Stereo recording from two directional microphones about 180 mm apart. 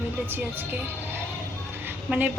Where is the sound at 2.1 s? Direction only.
10° right (ahead or behind).